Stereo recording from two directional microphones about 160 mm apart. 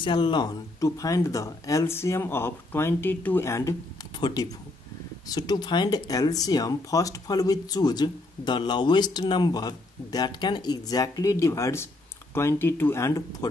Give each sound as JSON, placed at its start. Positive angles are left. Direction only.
{"t": 0.0, "sound": "speech", "side_deg": 30}